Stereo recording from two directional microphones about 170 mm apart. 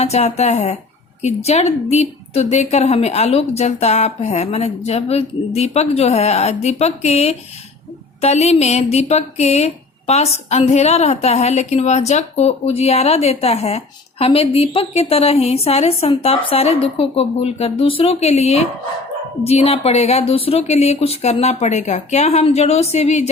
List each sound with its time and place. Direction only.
0.0 s speech: 40° left (ahead or behind)